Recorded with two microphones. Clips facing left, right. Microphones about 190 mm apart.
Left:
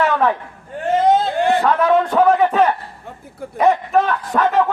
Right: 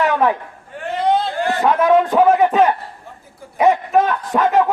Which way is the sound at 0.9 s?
45° left (ahead or behind).